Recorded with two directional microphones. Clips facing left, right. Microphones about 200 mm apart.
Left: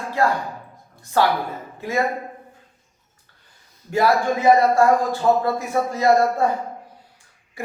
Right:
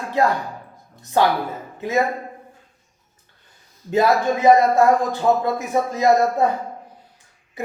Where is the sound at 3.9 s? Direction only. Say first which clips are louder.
Right 1 dB; 20° right (ahead or behind).